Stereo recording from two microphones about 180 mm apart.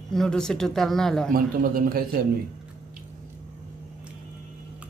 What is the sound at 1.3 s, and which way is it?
Speech, 55° right (ahead or behind).